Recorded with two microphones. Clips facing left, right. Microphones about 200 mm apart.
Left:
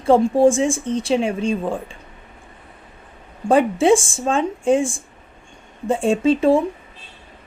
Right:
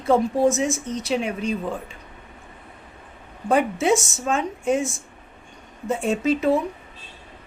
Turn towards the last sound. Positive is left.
turn(degrees=30)  # may be behind; listen again after turning